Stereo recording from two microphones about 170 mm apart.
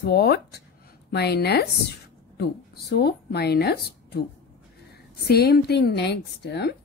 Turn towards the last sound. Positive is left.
turn(degrees=85)